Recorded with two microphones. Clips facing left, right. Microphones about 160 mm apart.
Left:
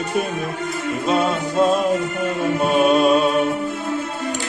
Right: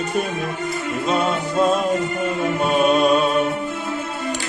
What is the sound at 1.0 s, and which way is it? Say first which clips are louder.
Music: left 1 dB; centre (ahead or behind).